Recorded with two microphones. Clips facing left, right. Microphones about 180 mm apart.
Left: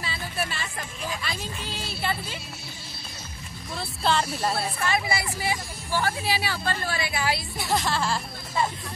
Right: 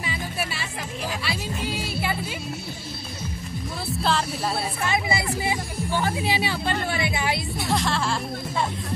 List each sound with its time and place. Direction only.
0.0 s music: 10° right (ahead or behind)
1.2 s speech: 10° right (ahead or behind)
4.0 s speech: centre (ahead or behind)
4.8 s speech: 20° right (ahead or behind)
7.5 s speech: centre (ahead or behind)